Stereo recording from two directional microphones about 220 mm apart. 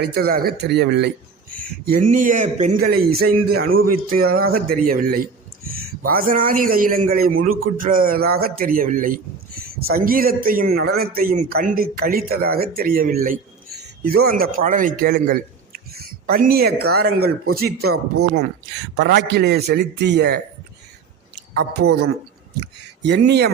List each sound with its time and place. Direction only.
0.0 s a man's voice: 45° right (ahead or behind)
23.0 s speech: 50° right (ahead or behind)